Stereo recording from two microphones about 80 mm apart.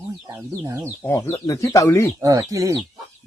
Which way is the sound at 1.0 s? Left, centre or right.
Left.